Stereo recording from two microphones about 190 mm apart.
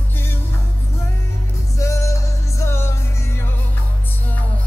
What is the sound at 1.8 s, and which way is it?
Music, 15° left (ahead or behind).